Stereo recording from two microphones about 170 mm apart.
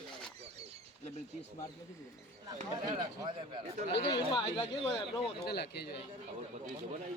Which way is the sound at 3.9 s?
80° left.